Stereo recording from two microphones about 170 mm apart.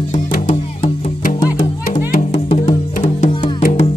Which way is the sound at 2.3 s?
35° left (ahead or behind).